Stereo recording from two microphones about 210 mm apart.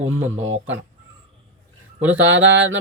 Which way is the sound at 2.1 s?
65° right (ahead or behind).